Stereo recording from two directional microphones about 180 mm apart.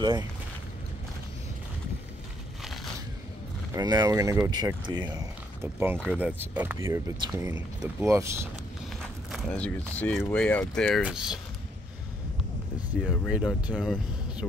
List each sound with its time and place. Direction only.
0.0 s speech: 25° right (ahead or behind)
2.6 s crushing: centre (ahead or behind)
3.7 s speech: 20° right (ahead or behind)
9.0 s speech: centre (ahead or behind)
13.0 s speech: centre (ahead or behind)